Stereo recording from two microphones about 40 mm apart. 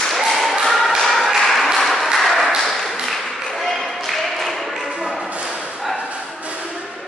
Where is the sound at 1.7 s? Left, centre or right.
Centre.